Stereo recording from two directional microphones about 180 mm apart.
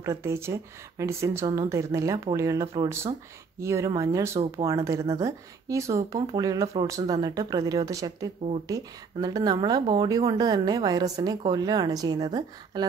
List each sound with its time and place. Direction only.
0.0 s speech: 15° right (ahead or behind)